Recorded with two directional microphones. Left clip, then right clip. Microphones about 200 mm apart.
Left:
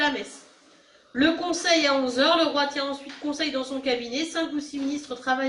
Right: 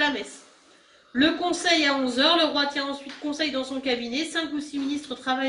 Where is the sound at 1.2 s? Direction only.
50° right (ahead or behind).